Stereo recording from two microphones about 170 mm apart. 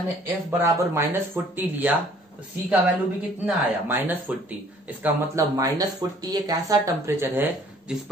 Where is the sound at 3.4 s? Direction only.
10° right (ahead or behind).